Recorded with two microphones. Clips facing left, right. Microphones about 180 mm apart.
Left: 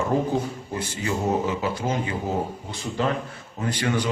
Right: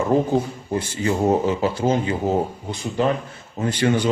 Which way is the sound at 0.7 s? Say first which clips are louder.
Right 6 dB; 35° right (ahead or behind).